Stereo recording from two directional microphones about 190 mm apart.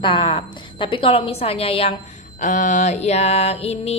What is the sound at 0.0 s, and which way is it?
A woman's voice, 25° left (ahead or behind).